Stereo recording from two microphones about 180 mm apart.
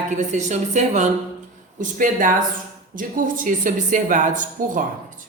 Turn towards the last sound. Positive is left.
turn(degrees=-50)  # may be behind; listen again after turning